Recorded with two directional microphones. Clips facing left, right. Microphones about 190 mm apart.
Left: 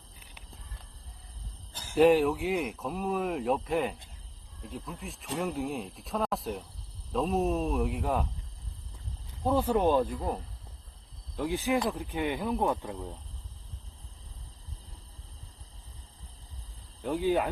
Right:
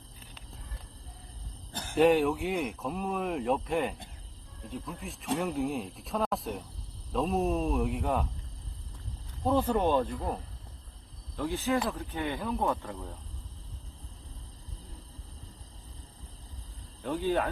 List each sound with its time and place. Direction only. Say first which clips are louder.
1.7 s jingle bell: right 7 dB; 60° right (ahead or behind)
2.0 s speech: left 1 dB; centre (ahead or behind)
9.4 s speech: left 1 dB; 5° left (ahead or behind)
17.0 s speech: left 2 dB; 15° left (ahead or behind)